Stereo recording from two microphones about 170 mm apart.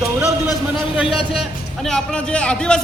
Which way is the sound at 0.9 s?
5° right (ahead or behind).